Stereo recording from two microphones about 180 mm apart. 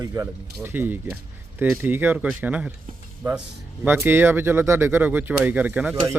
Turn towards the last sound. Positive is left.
turn(degrees=-5)  # may be behind; listen again after turning